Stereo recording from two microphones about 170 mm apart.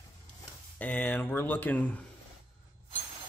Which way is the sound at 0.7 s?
10° left (ahead or behind).